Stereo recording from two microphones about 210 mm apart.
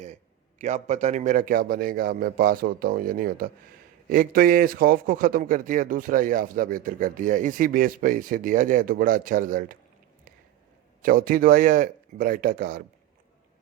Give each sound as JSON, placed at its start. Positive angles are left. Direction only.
{"t": 0.6, "sound": "a man's voice", "side_deg": -35}
{"t": 11.0, "sound": "a man's voice", "side_deg": -40}